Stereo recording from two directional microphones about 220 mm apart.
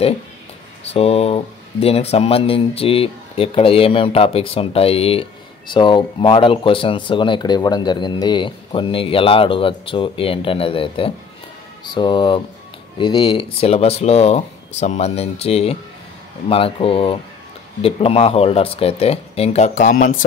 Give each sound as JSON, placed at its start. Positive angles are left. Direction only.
{"t": 0.9, "sound": "speech", "side_deg": 25}